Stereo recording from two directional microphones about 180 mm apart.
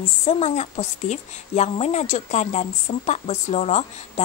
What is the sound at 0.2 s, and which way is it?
A woman's voice, 40° left (ahead or behind).